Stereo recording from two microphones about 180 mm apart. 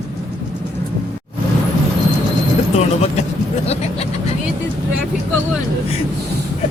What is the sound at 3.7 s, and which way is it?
Speech, 35° left (ahead or behind).